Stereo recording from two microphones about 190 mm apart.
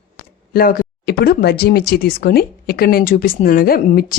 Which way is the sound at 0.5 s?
50° left (ahead or behind).